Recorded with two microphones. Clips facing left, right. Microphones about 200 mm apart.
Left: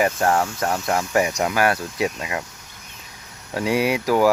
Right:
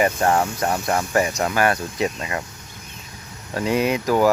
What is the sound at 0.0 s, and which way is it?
Speech, centre (ahead or behind).